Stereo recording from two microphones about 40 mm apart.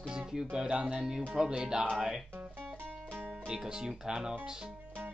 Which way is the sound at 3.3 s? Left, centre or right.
Right.